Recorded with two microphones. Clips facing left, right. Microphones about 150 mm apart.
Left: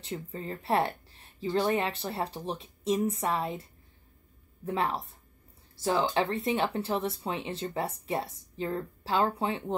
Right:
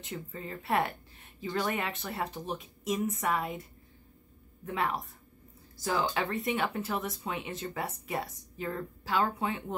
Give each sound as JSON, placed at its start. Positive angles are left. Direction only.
{"t": 0.0, "sound": "speech", "side_deg": 30}
{"t": 4.6, "sound": "speech", "side_deg": 30}